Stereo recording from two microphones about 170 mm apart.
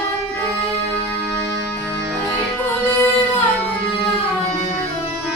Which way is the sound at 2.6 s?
10° left (ahead or behind).